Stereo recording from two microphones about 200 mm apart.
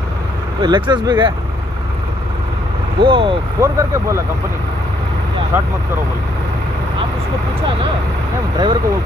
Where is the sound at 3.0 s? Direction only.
25° right (ahead or behind).